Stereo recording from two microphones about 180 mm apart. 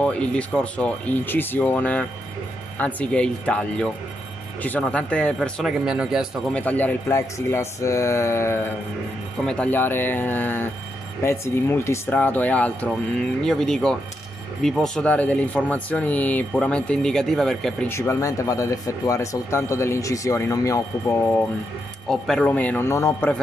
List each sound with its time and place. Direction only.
0.0 s speech: 5° left (ahead or behind)
6.5 s speech: 10° left (ahead or behind)
17.8 s speech: 15° left (ahead or behind)